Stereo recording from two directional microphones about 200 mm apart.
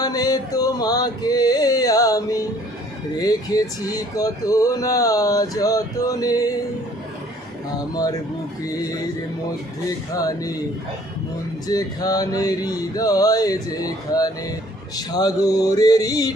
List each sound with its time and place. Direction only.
0.0 s music: 20° left (ahead or behind)
3.2 s speech: 20° left (ahead or behind)
7.8 s a sound: 20° left (ahead or behind)
8.6 s speech: 15° left (ahead or behind)
10.2 s speech: 20° left (ahead or behind)
11.7 s a sound: 20° left (ahead or behind)